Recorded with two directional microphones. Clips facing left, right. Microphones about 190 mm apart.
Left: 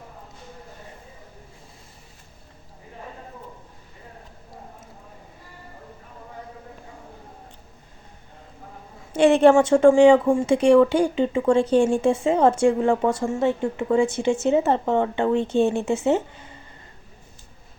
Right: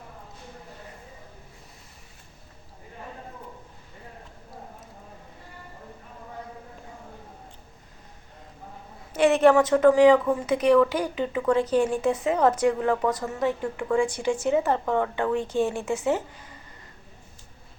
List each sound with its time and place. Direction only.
9.1 s a woman's voice: 30° left (ahead or behind)